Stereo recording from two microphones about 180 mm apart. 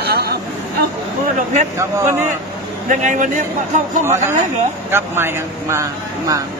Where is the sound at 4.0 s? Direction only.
15° right (ahead or behind).